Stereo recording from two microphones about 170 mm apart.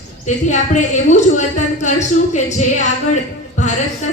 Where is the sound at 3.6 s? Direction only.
45° left (ahead or behind).